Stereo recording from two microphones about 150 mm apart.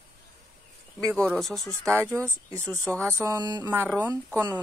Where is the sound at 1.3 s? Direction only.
Centre (ahead or behind).